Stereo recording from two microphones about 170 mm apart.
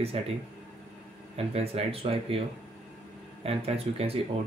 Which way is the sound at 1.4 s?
35° right (ahead or behind).